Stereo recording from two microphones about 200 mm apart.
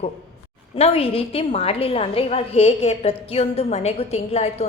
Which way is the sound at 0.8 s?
30° left (ahead or behind).